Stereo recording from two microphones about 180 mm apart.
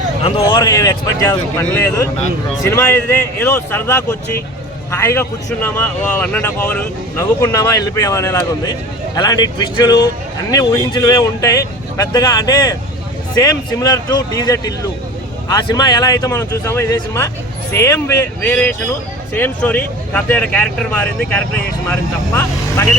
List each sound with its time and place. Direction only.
0.3 s a man's voice: 30° left (ahead or behind); by 22.9 s 15° left (ahead or behind)